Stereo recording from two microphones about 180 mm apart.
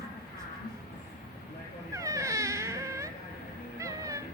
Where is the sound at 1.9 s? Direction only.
15° right (ahead or behind).